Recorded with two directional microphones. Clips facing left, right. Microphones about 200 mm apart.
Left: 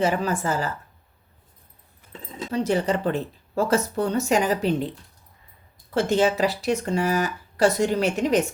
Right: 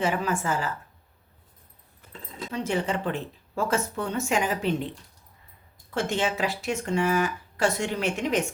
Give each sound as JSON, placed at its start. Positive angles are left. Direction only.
{"t": 0.0, "sound": "speech", "side_deg": 40}
{"t": 2.5, "sound": "speech", "side_deg": 35}
{"t": 5.9, "sound": "speech", "side_deg": 35}